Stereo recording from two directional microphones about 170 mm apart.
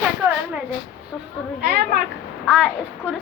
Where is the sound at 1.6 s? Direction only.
65° right (ahead or behind).